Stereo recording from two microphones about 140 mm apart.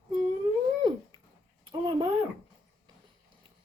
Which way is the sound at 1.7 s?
35° right (ahead or behind).